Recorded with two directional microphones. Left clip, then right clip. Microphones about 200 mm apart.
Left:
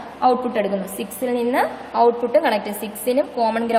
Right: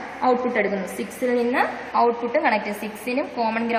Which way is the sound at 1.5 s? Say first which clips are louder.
Left 1 dB; 45° left (ahead or behind).